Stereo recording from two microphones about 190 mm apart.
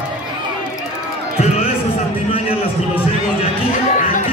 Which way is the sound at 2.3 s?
30° left (ahead or behind).